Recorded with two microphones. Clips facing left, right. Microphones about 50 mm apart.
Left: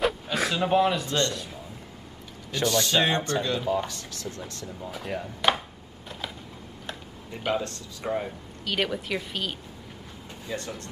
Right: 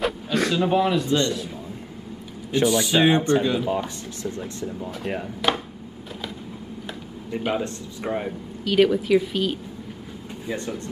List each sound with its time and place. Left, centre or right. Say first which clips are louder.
0.0 s a sound: right 3 dB; centre
2.5 s speech: right 4 dB; centre
5.4 s speech: right 1 dB; centre
7.3 s speech: right 3 dB; centre
8.6 s speech: right 10 dB; centre
10.4 s speech: right 4 dB; centre